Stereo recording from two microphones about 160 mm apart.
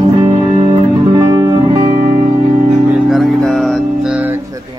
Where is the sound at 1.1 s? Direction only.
25° right (ahead or behind).